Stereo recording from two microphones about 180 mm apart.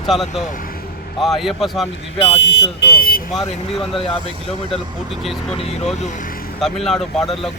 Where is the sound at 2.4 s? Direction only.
75° left (ahead or behind); by 3.2 s 60° left (ahead or behind).